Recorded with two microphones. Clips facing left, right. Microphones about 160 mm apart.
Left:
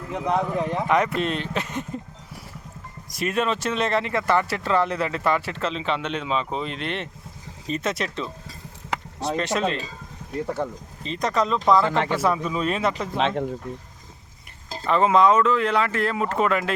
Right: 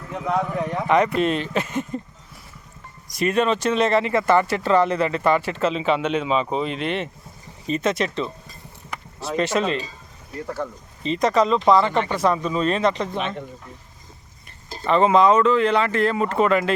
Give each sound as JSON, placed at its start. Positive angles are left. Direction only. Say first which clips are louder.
{"t": 0.1, "sound": "speech", "louder": "even", "side_deg": 20}
{"t": 0.9, "sound": "speech", "louder": "right 6 dB", "side_deg": 0}
{"t": 3.1, "sound": "speech", "louder": "right 4 dB", "side_deg": 0}
{"t": 10.4, "sound": "speech", "louder": "left 1 dB", "side_deg": 20}
{"t": 11.0, "sound": "speech", "louder": "right 5 dB", "side_deg": 0}
{"t": 13.1, "sound": "speech", "louder": "left 4 dB", "side_deg": 90}
{"t": 14.8, "sound": "speech", "louder": "right 2 dB", "side_deg": 0}